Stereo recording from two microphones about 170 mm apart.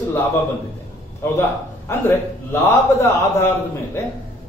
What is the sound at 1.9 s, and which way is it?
A man's voice, 15° left (ahead or behind).